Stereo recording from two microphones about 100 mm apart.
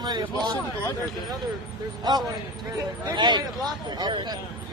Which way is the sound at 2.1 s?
45° right (ahead or behind).